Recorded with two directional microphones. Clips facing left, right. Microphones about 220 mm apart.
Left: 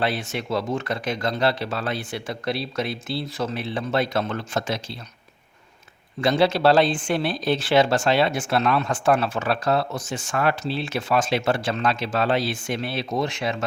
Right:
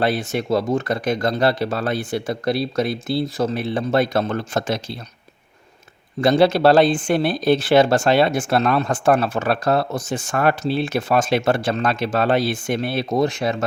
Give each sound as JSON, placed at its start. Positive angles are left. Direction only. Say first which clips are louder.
{"t": 0.0, "sound": "speech", "louder": "right 5 dB", "side_deg": -40}
{"t": 6.1, "sound": "speech", "louder": "right 5 dB", "side_deg": -40}